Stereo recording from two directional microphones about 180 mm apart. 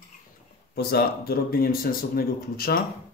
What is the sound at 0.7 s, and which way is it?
Speech, 60° left (ahead or behind).